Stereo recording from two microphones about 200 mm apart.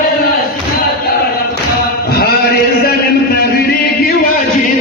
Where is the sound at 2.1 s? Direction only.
50° left (ahead or behind).